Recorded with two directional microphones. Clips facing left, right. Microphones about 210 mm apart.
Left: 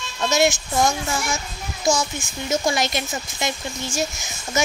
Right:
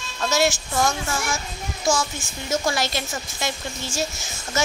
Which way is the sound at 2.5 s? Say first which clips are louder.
Left 2 dB; 20° left (ahead or behind).